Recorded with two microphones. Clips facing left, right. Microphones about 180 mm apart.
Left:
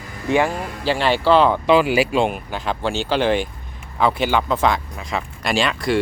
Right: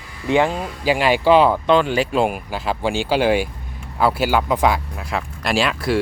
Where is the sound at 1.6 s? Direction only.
5° left (ahead or behind).